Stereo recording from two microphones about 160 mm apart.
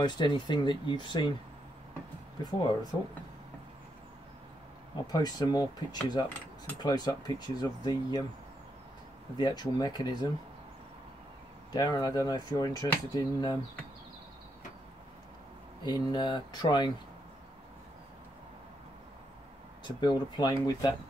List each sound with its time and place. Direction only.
0.0 s speech: 25° left (ahead or behind)
2.4 s speech: 25° left (ahead or behind)
4.9 s speech: 25° left (ahead or behind)
9.4 s speech: 25° left (ahead or behind)
11.7 s speech: 25° left (ahead or behind)
15.8 s speech: 25° left (ahead or behind)
19.8 s speech: 25° left (ahead or behind)